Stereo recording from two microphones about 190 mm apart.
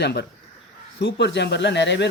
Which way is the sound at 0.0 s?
60° left (ahead or behind).